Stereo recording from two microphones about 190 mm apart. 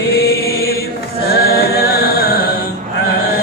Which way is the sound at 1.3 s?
55° left (ahead or behind).